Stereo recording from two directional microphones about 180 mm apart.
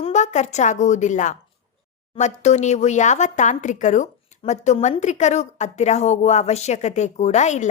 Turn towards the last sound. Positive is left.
turn(degrees=40)  # may be behind; listen again after turning